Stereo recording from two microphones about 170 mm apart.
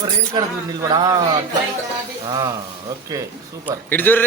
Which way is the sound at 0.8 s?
25° right (ahead or behind).